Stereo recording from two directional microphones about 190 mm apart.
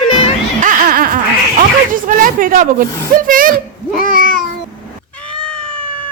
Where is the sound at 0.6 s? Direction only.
45° right (ahead or behind).